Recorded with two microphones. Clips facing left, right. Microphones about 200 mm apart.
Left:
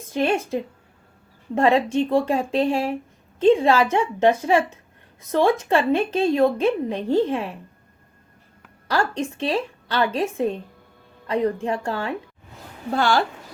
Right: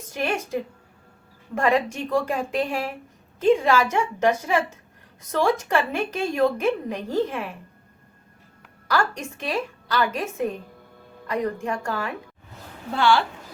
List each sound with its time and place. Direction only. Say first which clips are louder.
0.1 s a woman's voice: left 4 dB; 30° left (ahead or behind)
8.9 s a woman's voice: left 2 dB; 30° left (ahead or behind)
12.9 s speech: even; 45° left (ahead or behind)